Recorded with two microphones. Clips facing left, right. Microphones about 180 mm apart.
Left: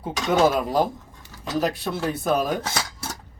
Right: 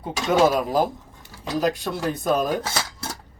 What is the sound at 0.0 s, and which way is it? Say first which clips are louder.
Speech: right 1 dB; centre (ahead or behind).